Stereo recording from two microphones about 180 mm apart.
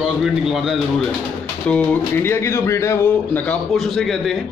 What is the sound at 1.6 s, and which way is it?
Speech, 10° left (ahead or behind).